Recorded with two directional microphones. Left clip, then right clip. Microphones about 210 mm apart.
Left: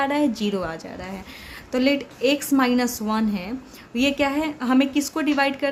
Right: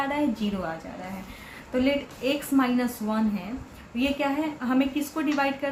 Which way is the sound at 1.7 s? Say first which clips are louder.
Left 4 dB; 60° left (ahead or behind).